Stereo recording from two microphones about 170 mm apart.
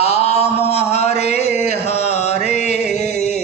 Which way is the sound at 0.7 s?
40° left (ahead or behind).